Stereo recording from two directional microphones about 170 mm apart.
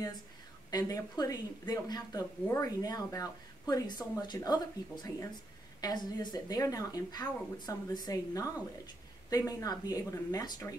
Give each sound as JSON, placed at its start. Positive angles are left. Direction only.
{"t": 0.7, "sound": "speech", "side_deg": 20}